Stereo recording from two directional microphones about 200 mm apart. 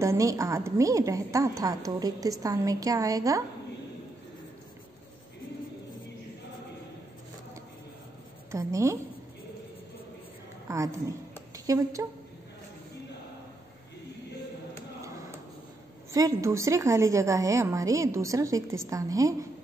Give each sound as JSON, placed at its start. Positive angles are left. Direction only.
{"t": 0.0, "sound": "a woman's voice", "side_deg": -15}
{"t": 8.5, "sound": "a woman's voice", "side_deg": -15}
{"t": 10.7, "sound": "a woman's voice", "side_deg": -15}
{"t": 16.1, "sound": "a woman's voice", "side_deg": -15}